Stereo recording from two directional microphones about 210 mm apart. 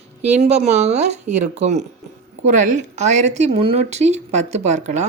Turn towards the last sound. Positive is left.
turn(degrees=-35)  # may be behind; listen again after turning